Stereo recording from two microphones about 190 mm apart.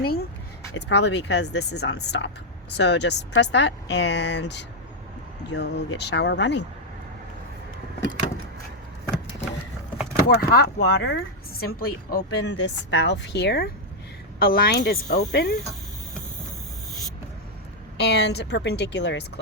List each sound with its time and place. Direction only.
0.0 s a sound: 55° left (ahead or behind)
0.7 s a woman's voice: 70° left (ahead or behind)
10.2 s a woman's voice: 55° left (ahead or behind)
17.9 s a woman's voice: 65° left (ahead or behind)